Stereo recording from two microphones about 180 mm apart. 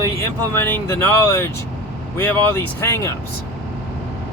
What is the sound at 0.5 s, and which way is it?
Speech, 10° left (ahead or behind).